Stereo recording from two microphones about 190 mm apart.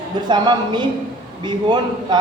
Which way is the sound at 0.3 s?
25° right (ahead or behind).